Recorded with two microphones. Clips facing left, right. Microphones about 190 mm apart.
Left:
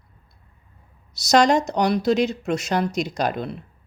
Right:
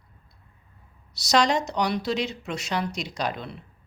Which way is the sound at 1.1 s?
45° left (ahead or behind).